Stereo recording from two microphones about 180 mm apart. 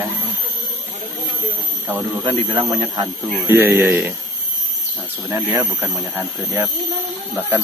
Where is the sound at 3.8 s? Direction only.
5° right (ahead or behind).